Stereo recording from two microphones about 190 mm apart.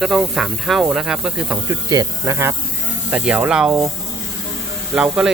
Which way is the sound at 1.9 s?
15° right (ahead or behind).